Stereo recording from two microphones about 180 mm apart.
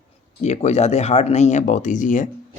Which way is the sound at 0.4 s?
40° left (ahead or behind).